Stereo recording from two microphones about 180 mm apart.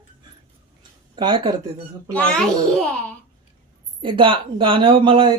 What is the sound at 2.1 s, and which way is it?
Speech, 5° left (ahead or behind).